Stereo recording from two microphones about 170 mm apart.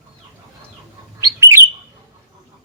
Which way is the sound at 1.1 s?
15° right (ahead or behind).